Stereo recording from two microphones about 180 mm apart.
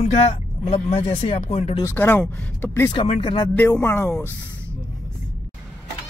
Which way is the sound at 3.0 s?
30° left (ahead or behind).